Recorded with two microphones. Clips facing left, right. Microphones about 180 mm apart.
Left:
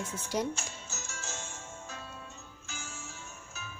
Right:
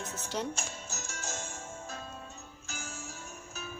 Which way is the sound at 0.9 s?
55° right (ahead or behind).